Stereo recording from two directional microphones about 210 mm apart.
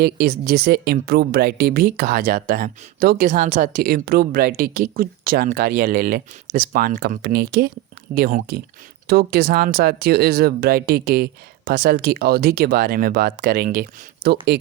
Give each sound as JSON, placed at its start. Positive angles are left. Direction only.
{"t": 0.0, "sound": "speech", "side_deg": -45}